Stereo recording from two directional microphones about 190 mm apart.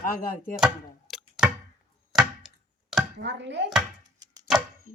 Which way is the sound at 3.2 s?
65° right (ahead or behind).